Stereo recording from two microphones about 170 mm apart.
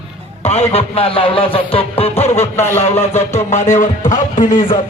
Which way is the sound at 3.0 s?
40° left (ahead or behind).